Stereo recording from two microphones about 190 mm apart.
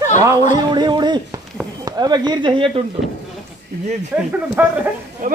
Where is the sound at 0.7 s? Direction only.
25° right (ahead or behind).